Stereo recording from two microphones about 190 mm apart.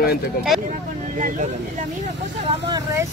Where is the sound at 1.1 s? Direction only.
45° right (ahead or behind).